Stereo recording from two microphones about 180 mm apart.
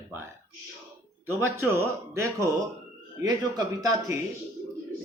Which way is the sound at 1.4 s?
15° right (ahead or behind).